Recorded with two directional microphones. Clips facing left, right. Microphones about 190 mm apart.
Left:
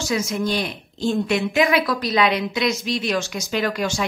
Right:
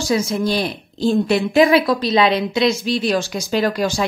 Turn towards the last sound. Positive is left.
turn(degrees=-35)  # may be behind; listen again after turning